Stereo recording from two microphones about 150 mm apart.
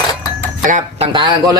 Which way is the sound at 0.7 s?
55° right (ahead or behind).